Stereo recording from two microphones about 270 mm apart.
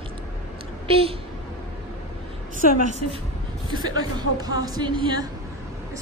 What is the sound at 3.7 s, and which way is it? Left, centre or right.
A woman's voice, centre.